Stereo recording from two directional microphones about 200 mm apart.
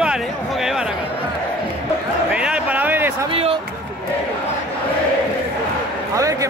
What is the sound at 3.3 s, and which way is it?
Speech, 30° right (ahead or behind).